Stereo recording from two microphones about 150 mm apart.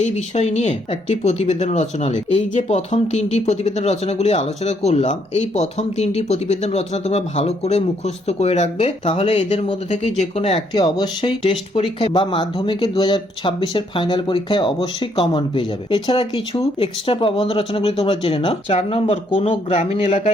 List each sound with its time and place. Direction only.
0.0 s speech: 50° left (ahead or behind)
10.8 s speech: 30° left (ahead or behind); by 20.3 s 45° left (ahead or behind)